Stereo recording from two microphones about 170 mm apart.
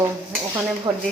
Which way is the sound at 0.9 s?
20° right (ahead or behind).